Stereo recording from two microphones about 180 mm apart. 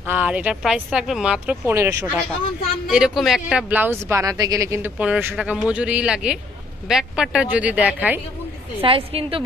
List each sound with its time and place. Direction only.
0.0 s speech: 10° right (ahead or behind)
2.9 s speech: centre (ahead or behind)
8.8 s a woman's voice: 30° right (ahead or behind)